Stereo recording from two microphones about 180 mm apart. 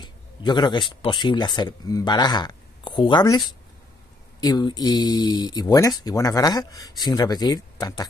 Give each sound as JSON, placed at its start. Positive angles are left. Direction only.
{"t": 0.0, "sound": "speech", "side_deg": 25}